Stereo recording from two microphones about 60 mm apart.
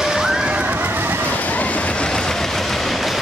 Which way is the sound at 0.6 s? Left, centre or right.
Right.